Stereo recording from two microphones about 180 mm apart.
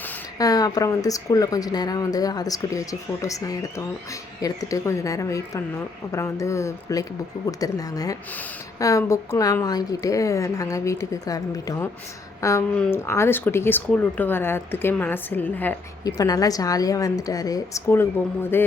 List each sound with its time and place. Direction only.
0.3 s speech: 20° left (ahead or behind)
16.0 s speech: 20° left (ahead or behind)